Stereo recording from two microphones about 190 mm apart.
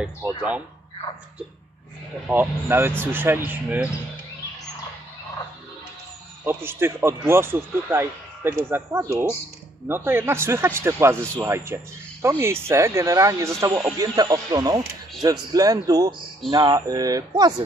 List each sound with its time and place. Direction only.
2.2 s a man's voice: 10° right (ahead or behind)
6.4 s a man's voice: 10° right (ahead or behind)